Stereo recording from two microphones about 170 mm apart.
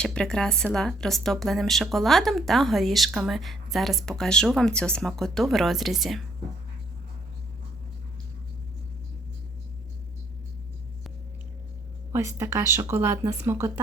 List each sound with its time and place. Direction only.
0.0 s speech: 5° left (ahead or behind)
12.1 s a woman's voice: 15° right (ahead or behind)